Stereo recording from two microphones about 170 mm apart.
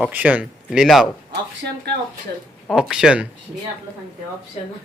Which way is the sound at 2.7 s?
5° right (ahead or behind).